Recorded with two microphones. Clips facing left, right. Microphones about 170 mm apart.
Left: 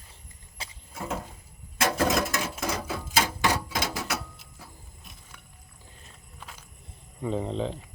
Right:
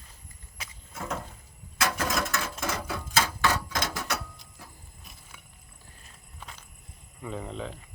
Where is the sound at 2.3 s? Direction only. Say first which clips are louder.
Left 2 dB; 15° left (ahead or behind).